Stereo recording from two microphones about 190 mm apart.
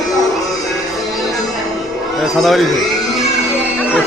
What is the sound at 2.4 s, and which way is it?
Speech, centre (ahead or behind).